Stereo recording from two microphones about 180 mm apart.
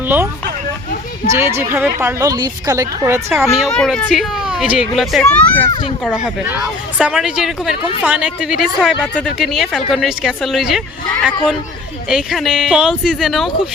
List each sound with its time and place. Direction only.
1.3 s a woman's voice: 15° right (ahead or behind)
3.4 s speech: centre (ahead or behind)